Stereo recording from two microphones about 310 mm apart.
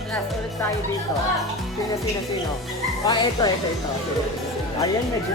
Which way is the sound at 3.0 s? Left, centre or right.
Centre.